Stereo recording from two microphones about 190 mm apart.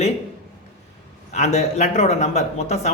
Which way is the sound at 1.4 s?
35° left (ahead or behind).